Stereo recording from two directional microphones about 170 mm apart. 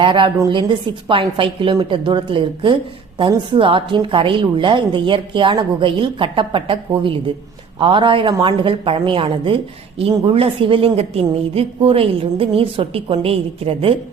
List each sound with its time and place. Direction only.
0.0 s a woman's voice: 30° right (ahead or behind)